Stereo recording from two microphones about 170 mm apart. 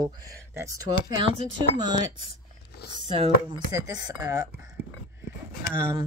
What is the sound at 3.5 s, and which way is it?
Speech, 20° right (ahead or behind).